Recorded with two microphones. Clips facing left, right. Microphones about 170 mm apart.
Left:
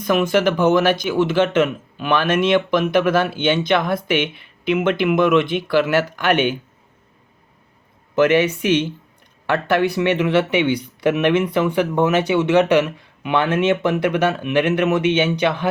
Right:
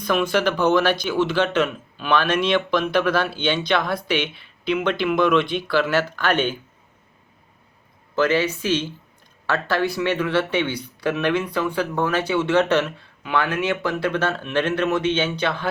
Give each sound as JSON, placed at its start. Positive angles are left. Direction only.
{"t": 0.1, "sound": "speech", "side_deg": 20}
{"t": 2.2, "sound": "speech", "side_deg": 45}
{"t": 2.6, "sound": "speech", "side_deg": 20}
{"t": 3.9, "sound": "speech", "side_deg": 50}
{"t": 4.6, "sound": "speech", "side_deg": 20}
{"t": 8.1, "sound": "speech", "side_deg": 20}